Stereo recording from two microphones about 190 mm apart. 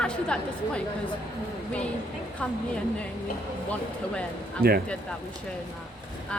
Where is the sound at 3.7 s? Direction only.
5° left (ahead or behind).